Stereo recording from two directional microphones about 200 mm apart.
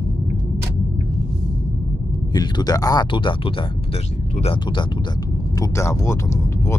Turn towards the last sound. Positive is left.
turn(degrees=15)  # may be behind; listen again after turning